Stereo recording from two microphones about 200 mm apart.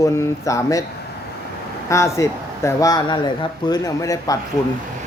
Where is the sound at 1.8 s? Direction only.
15° left (ahead or behind).